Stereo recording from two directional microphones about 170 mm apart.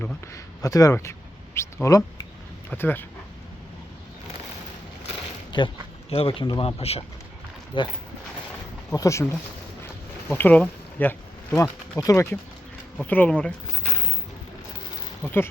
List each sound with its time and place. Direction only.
0.0 s a man's voice: 15° left (ahead or behind)
5.5 s speech: 30° left (ahead or behind)
9.0 s speech: 15° left (ahead or behind)
10.2 s speech: 10° left (ahead or behind)
15.2 s speech: 10° left (ahead or behind)